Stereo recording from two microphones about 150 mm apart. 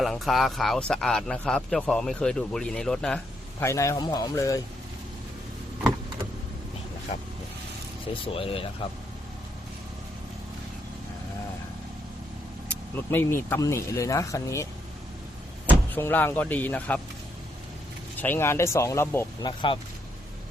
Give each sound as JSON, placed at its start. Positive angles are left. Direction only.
{"t": 0.0, "sound": "a man's voice", "side_deg": 0}
{"t": 3.6, "sound": "speech", "side_deg": 20}
{"t": 8.0, "sound": "speech", "side_deg": 35}
{"t": 13.1, "sound": "speech", "side_deg": 15}
{"t": 16.0, "sound": "speech", "side_deg": 15}
{"t": 18.2, "sound": "speech", "side_deg": 15}
{"t": 19.4, "sound": "speech", "side_deg": 30}